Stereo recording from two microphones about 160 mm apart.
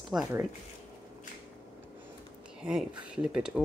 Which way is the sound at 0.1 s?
5° right (ahead or behind).